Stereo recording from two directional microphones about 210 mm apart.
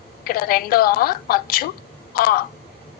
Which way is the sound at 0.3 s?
45° left (ahead or behind).